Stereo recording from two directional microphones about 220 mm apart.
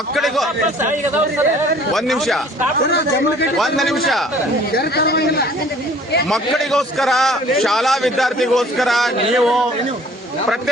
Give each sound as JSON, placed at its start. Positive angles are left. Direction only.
{"t": 0.2, "sound": "a man's voice", "side_deg": 0}
{"t": 1.9, "sound": "a man's voice", "side_deg": 0}
{"t": 3.6, "sound": "a man's voice", "side_deg": 0}
{"t": 4.7, "sound": "a man's voice", "side_deg": 45}
{"t": 6.3, "sound": "a man's voice", "side_deg": 0}